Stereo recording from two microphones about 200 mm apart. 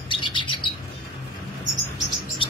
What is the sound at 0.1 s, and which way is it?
Bird, 25° left (ahead or behind).